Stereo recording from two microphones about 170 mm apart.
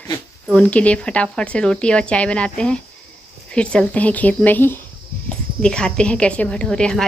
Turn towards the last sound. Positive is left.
turn(degrees=5)  # may be behind; listen again after turning